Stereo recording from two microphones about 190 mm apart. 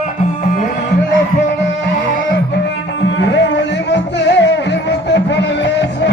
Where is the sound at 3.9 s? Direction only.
65° left (ahead or behind).